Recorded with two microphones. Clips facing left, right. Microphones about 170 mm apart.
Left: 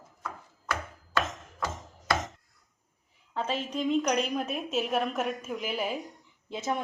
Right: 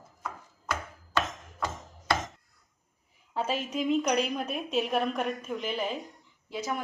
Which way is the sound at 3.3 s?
10° right (ahead or behind).